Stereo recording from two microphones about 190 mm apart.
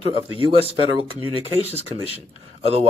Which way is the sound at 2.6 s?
30° right (ahead or behind).